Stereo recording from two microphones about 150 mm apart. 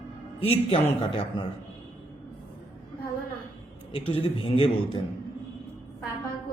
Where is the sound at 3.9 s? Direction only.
40° left (ahead or behind).